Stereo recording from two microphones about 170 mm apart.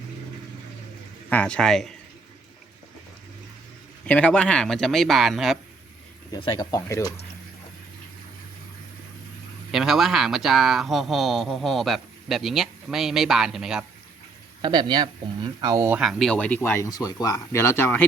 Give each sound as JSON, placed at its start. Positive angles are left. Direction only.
{"t": 1.3, "sound": "speech", "side_deg": 5}
{"t": 4.0, "sound": "speech", "side_deg": 5}
{"t": 6.3, "sound": "speech", "side_deg": 25}
{"t": 9.7, "sound": "speech", "side_deg": 0}
{"t": 14.6, "sound": "speech", "side_deg": -25}
{"t": 16.0, "sound": "speech", "side_deg": 0}